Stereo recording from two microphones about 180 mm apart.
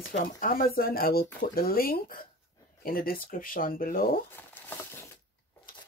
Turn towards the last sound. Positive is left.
turn(degrees=10)  # may be behind; listen again after turning